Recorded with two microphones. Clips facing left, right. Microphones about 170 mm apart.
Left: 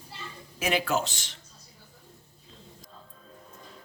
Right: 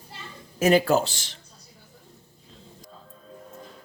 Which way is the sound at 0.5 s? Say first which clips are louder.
Right 8 dB; 40° right (ahead or behind).